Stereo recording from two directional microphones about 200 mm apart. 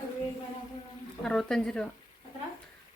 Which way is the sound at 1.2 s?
Centre (ahead or behind).